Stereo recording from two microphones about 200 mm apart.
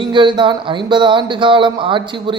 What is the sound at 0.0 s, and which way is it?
Speech, 25° right (ahead or behind).